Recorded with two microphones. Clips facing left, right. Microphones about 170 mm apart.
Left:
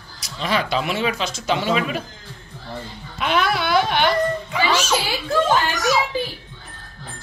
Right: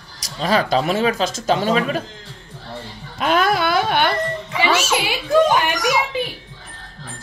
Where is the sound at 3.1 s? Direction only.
45° right (ahead or behind).